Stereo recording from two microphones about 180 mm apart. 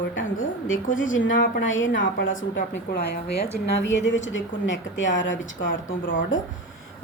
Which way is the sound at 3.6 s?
90° left.